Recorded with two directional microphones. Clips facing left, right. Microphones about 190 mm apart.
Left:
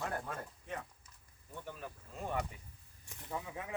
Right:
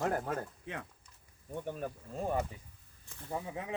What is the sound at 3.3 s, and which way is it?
Speech, 25° right (ahead or behind).